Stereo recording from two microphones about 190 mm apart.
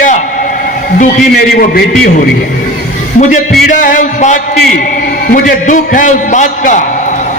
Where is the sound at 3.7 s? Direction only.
45° left (ahead or behind).